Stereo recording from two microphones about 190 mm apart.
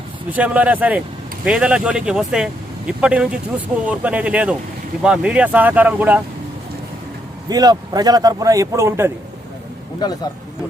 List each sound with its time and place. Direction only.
0.3 s speech: 10° right (ahead or behind)
7.5 s speech: 20° right (ahead or behind)